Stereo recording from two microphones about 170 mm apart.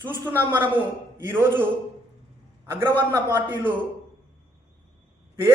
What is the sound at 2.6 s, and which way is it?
A man's voice, 15° right (ahead or behind).